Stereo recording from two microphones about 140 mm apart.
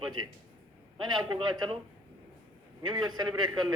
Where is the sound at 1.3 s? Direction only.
30° right (ahead or behind).